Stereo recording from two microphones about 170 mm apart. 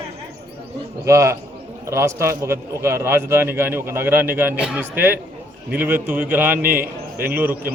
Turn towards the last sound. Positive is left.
turn(degrees=-10)  # may be behind; listen again after turning